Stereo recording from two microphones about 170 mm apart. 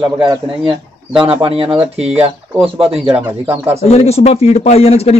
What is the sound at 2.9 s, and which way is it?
Speech, 5° right (ahead or behind).